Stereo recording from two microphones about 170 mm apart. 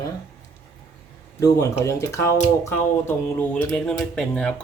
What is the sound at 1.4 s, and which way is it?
Speech, 20° left (ahead or behind).